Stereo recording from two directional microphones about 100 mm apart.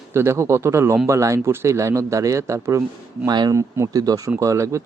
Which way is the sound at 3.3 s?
45° right (ahead or behind).